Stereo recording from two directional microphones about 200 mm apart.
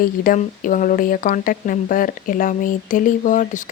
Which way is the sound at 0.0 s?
45° left (ahead or behind).